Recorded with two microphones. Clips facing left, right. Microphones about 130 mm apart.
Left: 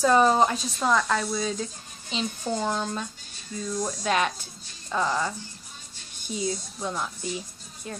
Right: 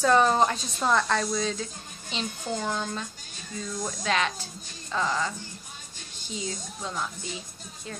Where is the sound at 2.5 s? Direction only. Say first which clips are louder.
Left 2 dB; 20° left (ahead or behind).